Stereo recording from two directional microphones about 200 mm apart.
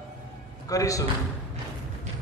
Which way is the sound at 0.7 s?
15° left (ahead or behind).